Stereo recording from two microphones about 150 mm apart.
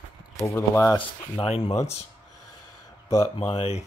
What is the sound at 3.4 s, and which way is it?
Speech, 45° left (ahead or behind).